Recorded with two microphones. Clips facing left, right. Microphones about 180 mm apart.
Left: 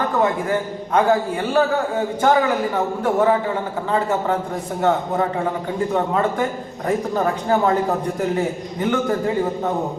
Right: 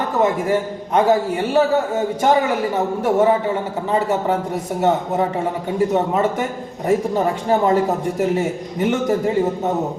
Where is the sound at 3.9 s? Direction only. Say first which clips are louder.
Right 2 dB; 20° right (ahead or behind).